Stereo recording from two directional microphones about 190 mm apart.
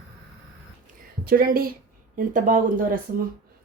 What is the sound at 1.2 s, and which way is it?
Speech, 50° right (ahead or behind).